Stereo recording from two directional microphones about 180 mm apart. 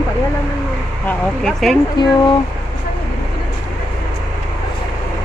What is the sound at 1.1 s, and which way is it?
Speech, centre (ahead or behind).